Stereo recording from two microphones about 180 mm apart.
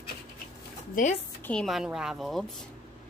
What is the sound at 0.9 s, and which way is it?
Speech, 45° left (ahead or behind).